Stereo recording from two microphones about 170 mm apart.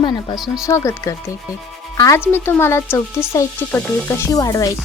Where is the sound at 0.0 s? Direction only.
25° left (ahead or behind).